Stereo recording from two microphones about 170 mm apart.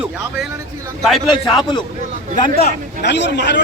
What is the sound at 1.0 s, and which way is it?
Speech, centre (ahead or behind).